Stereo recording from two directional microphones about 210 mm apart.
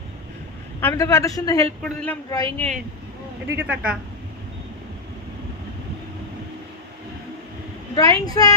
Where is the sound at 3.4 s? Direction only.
10° right (ahead or behind).